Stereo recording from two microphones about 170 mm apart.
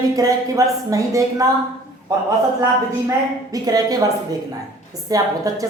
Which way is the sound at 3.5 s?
20° right (ahead or behind).